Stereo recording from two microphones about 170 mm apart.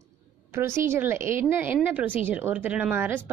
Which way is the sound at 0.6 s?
15° right (ahead or behind).